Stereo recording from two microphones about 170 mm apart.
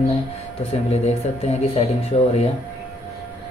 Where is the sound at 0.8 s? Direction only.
40° left (ahead or behind).